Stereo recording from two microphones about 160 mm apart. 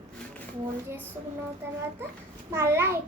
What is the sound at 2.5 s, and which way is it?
Speech, 15° right (ahead or behind).